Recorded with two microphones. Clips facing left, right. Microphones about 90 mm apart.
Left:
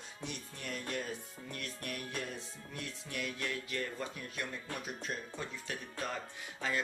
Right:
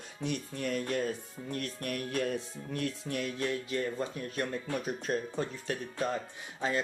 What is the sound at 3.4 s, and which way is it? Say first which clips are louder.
Speech: right 7 dB; 25° right (ahead or behind).